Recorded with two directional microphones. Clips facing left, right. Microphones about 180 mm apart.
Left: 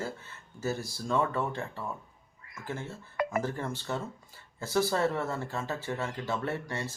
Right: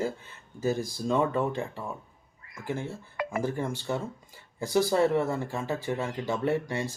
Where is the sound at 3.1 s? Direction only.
45° left (ahead or behind).